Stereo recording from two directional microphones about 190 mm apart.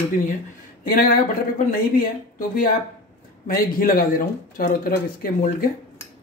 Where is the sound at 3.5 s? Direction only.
50° left (ahead or behind).